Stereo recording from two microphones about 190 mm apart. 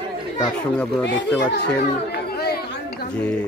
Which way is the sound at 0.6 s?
5° left (ahead or behind).